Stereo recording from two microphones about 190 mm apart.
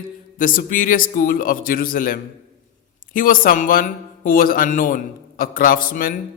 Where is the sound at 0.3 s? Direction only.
45° left (ahead or behind).